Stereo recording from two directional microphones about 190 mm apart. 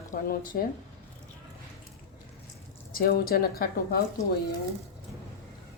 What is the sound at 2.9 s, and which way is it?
Speech, 50° left (ahead or behind).